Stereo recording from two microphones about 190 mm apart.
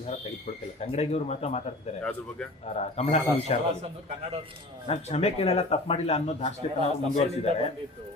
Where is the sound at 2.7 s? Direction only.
35° left (ahead or behind).